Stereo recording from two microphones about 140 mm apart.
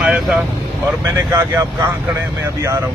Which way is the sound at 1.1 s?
20° right (ahead or behind).